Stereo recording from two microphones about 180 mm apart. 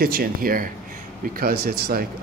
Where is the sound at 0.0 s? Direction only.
55° right (ahead or behind).